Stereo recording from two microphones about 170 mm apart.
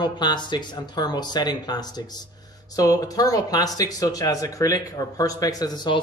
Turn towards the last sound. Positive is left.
turn(degrees=25)  # may be behind; listen again after turning